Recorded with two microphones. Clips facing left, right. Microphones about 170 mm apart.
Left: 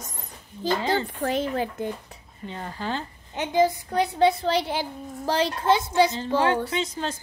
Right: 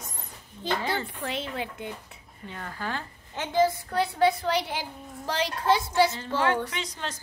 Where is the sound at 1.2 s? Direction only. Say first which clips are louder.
Left 7 dB; 40° left (ahead or behind).